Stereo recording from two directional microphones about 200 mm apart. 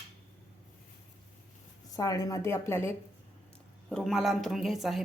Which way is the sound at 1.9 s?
15° left (ahead or behind).